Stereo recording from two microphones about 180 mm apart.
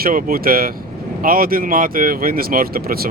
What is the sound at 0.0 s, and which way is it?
Speech, 55° right (ahead or behind).